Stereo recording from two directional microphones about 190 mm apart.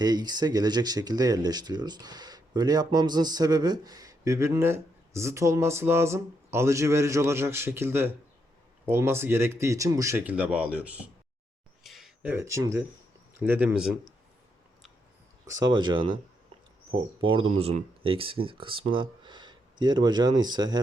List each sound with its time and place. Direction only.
0.0 s speech: 20° right (ahead or behind)
11.8 s a sound: centre (ahead or behind)
13.4 s speech: 10° right (ahead or behind)
15.4 s speech: 20° right (ahead or behind)
17.3 s speech: 30° right (ahead or behind)